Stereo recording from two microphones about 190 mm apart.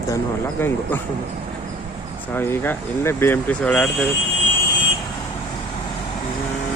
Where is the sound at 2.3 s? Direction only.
10° left (ahead or behind).